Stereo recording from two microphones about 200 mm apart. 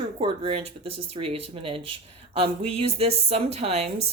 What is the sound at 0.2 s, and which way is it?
A woman's voice, 25° right (ahead or behind).